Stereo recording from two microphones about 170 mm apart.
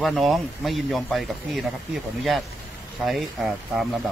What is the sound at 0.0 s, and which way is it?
Speech, centre (ahead or behind).